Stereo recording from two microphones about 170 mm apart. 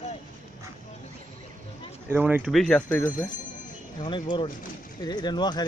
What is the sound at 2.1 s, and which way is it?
Speech, 10° right (ahead or behind).